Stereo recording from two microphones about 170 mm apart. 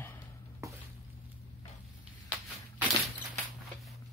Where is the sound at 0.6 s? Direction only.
20° right (ahead or behind).